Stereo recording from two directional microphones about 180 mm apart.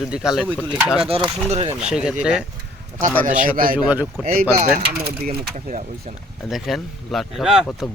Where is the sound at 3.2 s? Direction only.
50° right (ahead or behind).